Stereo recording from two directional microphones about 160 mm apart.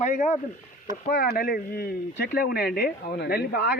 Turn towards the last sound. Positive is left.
turn(degrees=85)